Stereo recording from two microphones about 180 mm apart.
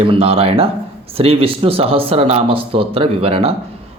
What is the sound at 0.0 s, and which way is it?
A man's voice, 30° right (ahead or behind).